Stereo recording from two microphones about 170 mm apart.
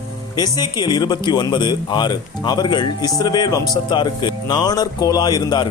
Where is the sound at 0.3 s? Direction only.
25° left (ahead or behind).